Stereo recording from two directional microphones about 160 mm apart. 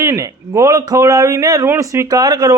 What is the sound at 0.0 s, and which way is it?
A man's voice, 20° right (ahead or behind).